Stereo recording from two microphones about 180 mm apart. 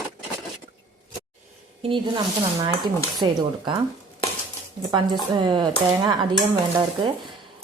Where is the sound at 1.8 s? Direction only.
25° right (ahead or behind).